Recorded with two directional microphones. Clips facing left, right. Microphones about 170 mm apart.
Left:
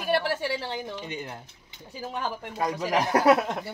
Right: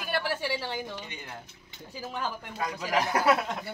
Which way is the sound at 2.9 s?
20° left (ahead or behind).